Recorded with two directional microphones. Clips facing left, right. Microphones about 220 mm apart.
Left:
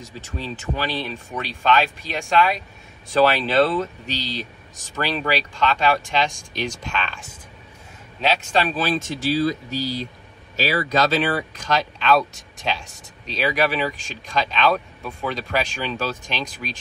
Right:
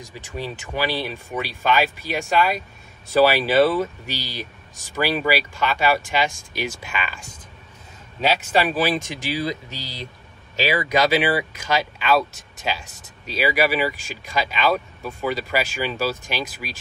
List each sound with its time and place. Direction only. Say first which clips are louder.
0.0 s speech: right 1 dB; 15° right (ahead or behind)
8.2 s speech: right 1 dB; 5° right (ahead or behind)